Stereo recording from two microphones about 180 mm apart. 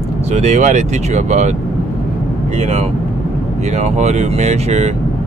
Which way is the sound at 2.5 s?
35° right (ahead or behind).